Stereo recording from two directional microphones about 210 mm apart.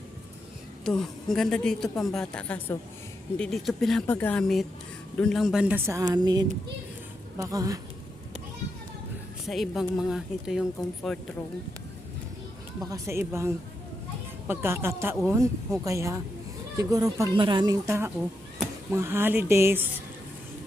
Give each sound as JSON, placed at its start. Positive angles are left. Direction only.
{"t": 0.9, "sound": "a woman's voice", "side_deg": 0}
{"t": 9.5, "sound": "a woman's voice", "side_deg": 0}
{"t": 12.8, "sound": "speech", "side_deg": -15}